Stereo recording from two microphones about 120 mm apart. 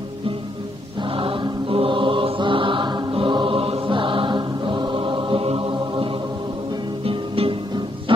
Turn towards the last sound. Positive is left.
turn(degrees=-50)  # may be behind; listen again after turning